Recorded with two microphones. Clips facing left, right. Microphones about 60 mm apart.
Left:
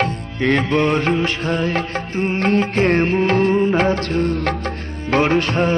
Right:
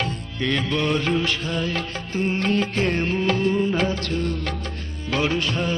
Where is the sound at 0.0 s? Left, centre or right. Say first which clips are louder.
Left 7 dB; left.